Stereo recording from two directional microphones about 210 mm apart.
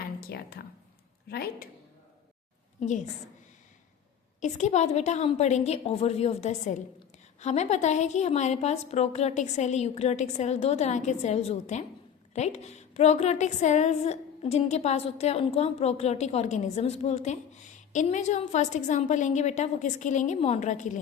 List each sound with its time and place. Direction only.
0.2 s a woman's voice: 50° left (ahead or behind)
4.4 s a woman's voice: 35° left (ahead or behind)